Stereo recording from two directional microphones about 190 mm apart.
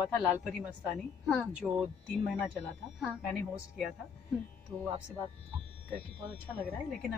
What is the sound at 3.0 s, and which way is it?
Speech, centre (ahead or behind).